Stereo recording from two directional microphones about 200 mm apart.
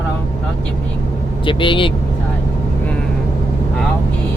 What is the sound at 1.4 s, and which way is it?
Speech, 25° left (ahead or behind).